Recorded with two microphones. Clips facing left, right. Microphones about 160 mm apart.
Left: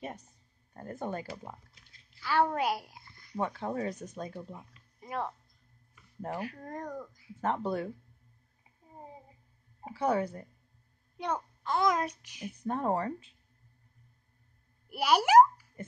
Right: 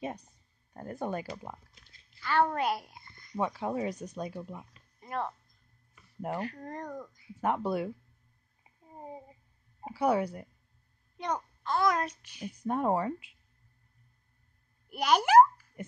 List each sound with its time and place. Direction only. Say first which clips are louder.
0.0 s speech: right 4 dB; 15° right (ahead or behind)
2.1 s a sound: even; 10° left (ahead or behind)
3.3 s speech: right 2 dB; 10° right (ahead or behind)
5.0 s speech: right 1 dB; 10° left (ahead or behind)
6.3 s speech: right 1 dB; 10° left (ahead or behind)
7.3 s speech: right 2 dB; 10° right (ahead or behind)
9.8 s speech: right 2 dB; 10° right (ahead or behind)
11.1 s a child's voice: even; 5° left (ahead or behind)
12.6 s speech: right 2 dB; 10° right (ahead or behind)
14.9 s a child's voice: even; 5° left (ahead or behind)